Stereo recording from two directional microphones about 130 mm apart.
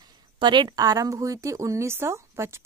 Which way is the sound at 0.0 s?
35° right (ahead or behind).